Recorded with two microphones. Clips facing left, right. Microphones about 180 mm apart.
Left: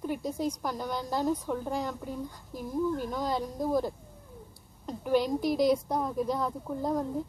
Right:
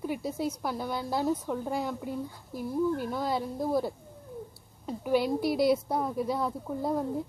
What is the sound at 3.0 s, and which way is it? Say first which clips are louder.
Speech: right 1 dB; 5° right (ahead or behind).